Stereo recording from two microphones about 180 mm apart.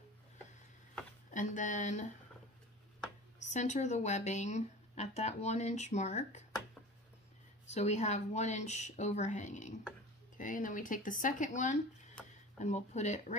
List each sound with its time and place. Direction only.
1.3 s speech: 45° left (ahead or behind)
3.3 s speech: 40° left (ahead or behind)
7.6 s speech: 40° left (ahead or behind)